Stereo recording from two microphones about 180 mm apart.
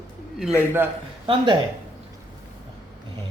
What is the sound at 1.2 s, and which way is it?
Speech, 25° right (ahead or behind).